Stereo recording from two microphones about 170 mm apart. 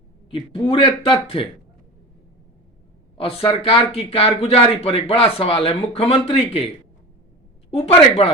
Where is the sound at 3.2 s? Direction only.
35° left (ahead or behind).